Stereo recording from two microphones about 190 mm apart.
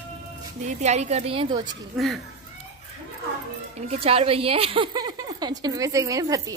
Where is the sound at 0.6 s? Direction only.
35° right (ahead or behind).